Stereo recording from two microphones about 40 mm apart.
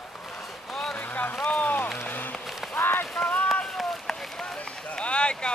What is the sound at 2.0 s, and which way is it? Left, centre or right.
Run, left.